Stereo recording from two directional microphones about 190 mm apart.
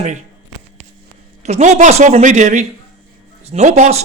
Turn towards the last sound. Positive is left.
turn(degrees=-35)  # may be behind; listen again after turning